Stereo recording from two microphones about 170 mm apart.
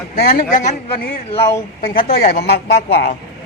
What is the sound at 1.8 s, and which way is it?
A woman's voice, 55° left (ahead or behind).